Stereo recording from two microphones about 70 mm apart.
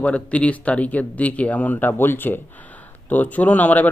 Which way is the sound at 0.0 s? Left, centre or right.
Centre.